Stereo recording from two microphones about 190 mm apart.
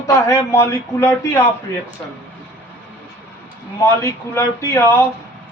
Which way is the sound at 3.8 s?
15° left (ahead or behind).